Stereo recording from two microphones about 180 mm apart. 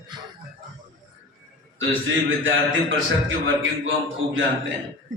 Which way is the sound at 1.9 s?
90° right.